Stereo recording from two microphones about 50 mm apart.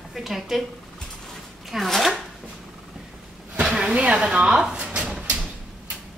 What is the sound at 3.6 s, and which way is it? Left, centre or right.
Speech, centre.